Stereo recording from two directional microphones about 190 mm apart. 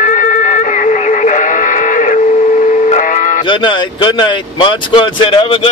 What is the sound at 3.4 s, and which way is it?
Speech, 25° left (ahead or behind).